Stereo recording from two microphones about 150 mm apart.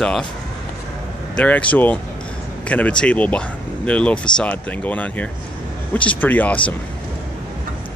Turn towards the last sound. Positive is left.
turn(degrees=10)  # may be behind; listen again after turning